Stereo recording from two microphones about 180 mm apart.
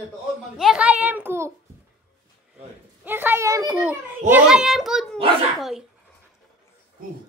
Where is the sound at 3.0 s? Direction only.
10° right (ahead or behind).